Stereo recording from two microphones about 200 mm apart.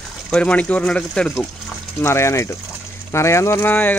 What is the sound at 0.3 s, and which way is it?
Speech, 5° left (ahead or behind).